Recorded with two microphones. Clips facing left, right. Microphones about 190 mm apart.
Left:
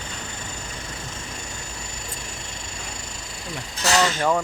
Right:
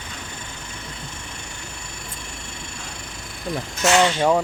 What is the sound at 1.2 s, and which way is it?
Vehicle, 60° right (ahead or behind).